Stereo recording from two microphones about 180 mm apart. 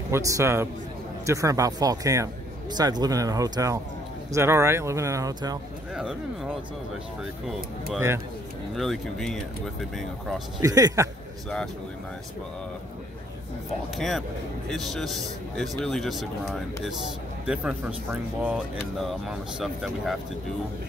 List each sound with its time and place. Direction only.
0.1 s a man's voice: 15° right (ahead or behind)
5.9 s speech: 5° right (ahead or behind)
8.7 s speech: centre (ahead or behind)
10.6 s speech: 20° right (ahead or behind)
13.9 s speech: centre (ahead or behind)